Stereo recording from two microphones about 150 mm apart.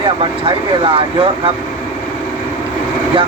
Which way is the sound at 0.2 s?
35° right (ahead or behind).